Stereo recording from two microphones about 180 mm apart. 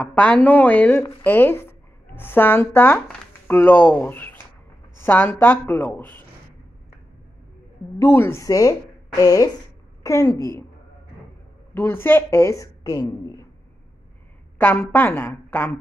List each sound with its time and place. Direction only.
0.1 s a woman's voice: 10° left (ahead or behind)
8.0 s a woman's voice: 15° left (ahead or behind)
11.7 s a woman's voice: 15° left (ahead or behind)
14.6 s a woman's voice: 10° left (ahead or behind)